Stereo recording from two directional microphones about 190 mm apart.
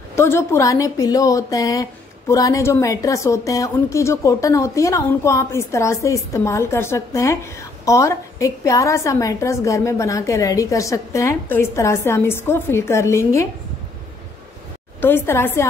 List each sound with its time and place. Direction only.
0.1 s a woman's voice: 15° left (ahead or behind)
15.0 s a woman's voice: 10° left (ahead or behind)